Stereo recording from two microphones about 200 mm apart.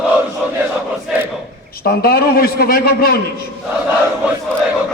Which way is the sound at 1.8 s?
50° left (ahead or behind).